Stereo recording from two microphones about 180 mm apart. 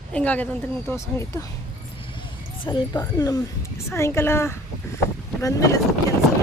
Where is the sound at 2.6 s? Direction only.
25° left (ahead or behind).